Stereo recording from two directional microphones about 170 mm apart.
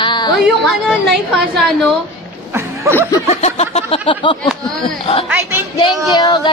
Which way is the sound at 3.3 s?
40° left (ahead or behind).